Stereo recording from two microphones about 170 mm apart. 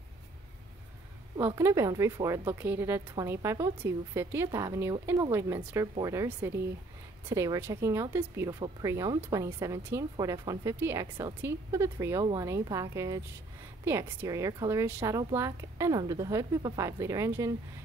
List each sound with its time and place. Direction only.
1.4 s speech: 15° right (ahead or behind)